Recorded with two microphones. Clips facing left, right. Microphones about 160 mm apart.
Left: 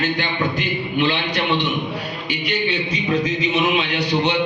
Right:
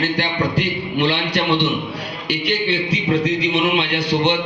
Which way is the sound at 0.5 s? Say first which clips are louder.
Right 1 dB; 75° right (ahead or behind).